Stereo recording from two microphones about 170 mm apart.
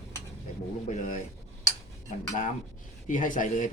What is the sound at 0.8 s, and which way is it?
Speech, 50° left (ahead or behind).